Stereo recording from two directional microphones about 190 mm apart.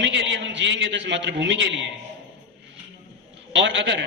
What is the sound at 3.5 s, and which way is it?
Speech, 75° right (ahead or behind).